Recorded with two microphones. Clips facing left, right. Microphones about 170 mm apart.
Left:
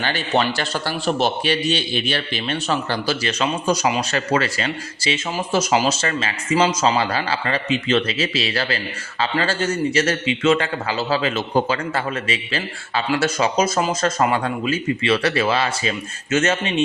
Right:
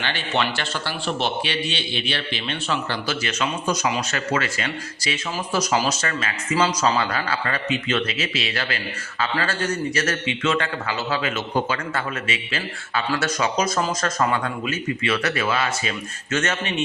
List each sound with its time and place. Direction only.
0.0 s a man's voice: 40° left (ahead or behind)